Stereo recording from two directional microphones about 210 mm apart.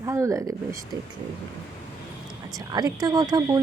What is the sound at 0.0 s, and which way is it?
Speech, 15° right (ahead or behind).